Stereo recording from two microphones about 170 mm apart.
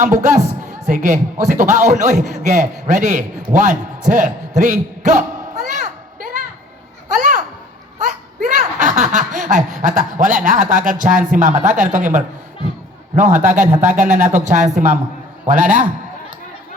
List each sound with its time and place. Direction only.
0.0 s a man's voice: 50° right (ahead or behind)
7.2 s children playing: 50° right (ahead or behind)
8.0 s snicker: 45° right (ahead or behind)
13.1 s speech: 50° right (ahead or behind)